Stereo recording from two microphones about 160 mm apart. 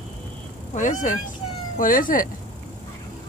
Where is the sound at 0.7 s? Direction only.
55° left (ahead or behind).